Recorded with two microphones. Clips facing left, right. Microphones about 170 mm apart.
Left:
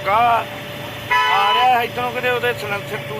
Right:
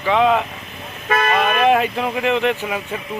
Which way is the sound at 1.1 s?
55° right (ahead or behind).